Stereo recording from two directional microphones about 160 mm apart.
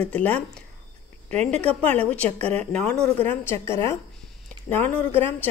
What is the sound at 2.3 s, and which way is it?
Speech, 40° right (ahead or behind).